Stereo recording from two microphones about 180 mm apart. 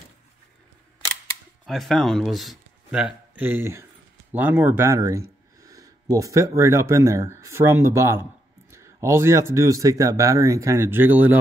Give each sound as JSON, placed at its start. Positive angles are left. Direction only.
{"t": 1.7, "sound": "speech", "side_deg": 0}